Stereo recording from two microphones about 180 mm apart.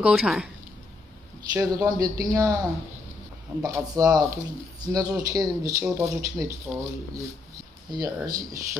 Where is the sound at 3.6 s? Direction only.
20° right (ahead or behind).